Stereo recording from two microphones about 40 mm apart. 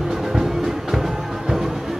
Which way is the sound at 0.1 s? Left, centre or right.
Centre.